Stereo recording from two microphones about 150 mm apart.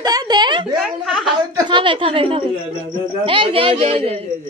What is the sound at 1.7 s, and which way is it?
A man's voice, 35° right (ahead or behind).